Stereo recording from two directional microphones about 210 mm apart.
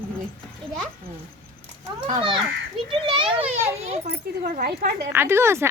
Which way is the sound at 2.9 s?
25° right (ahead or behind).